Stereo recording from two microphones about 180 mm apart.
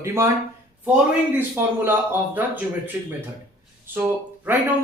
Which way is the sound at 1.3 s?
10° right (ahead or behind).